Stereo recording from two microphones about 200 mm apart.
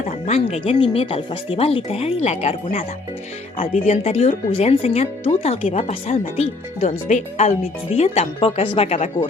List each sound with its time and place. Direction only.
0.3 s speech: 30° left (ahead or behind)